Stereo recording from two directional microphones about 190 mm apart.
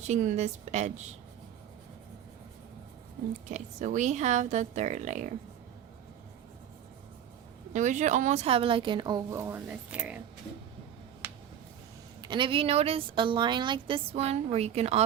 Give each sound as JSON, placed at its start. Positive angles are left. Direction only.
{"t": 0.1, "sound": "speech", "side_deg": -40}
{"t": 3.5, "sound": "speech", "side_deg": -40}
{"t": 7.7, "sound": "a woman's voice", "side_deg": -40}
{"t": 12.2, "sound": "a woman's voice", "side_deg": -25}